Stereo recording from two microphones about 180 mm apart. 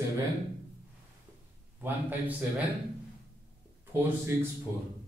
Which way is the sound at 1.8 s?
10° right (ahead or behind).